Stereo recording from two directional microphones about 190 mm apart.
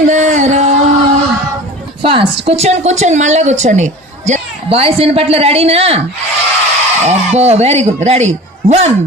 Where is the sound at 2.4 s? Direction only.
30° right (ahead or behind).